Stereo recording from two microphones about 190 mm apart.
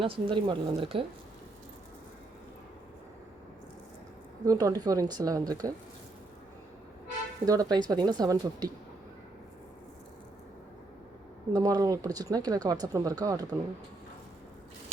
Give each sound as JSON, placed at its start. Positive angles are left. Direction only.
{"t": 0.0, "sound": "speech", "side_deg": -25}
{"t": 4.4, "sound": "speech", "side_deg": -20}
{"t": 7.4, "sound": "speech", "side_deg": -20}
{"t": 11.5, "sound": "speech", "side_deg": -20}